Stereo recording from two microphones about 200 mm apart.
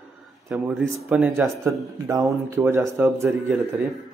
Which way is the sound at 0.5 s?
5° right (ahead or behind).